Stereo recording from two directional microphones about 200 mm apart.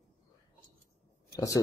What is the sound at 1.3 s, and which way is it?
Speech, 15° left (ahead or behind).